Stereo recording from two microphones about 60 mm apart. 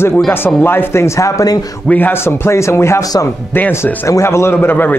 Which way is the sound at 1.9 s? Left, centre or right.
Left.